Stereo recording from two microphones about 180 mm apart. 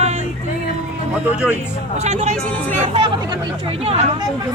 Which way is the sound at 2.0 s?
40° right (ahead or behind).